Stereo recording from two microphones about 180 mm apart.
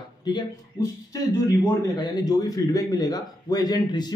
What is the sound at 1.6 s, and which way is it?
Speech, 20° left (ahead or behind).